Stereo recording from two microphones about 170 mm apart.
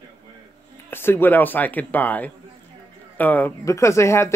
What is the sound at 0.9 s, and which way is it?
Speech, 15° left (ahead or behind).